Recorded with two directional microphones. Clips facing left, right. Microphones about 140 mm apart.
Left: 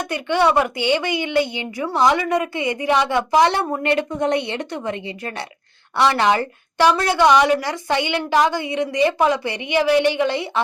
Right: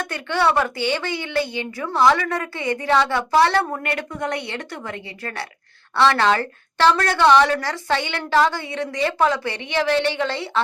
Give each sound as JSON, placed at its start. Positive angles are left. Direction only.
{"t": 0.0, "sound": "speech", "side_deg": 15}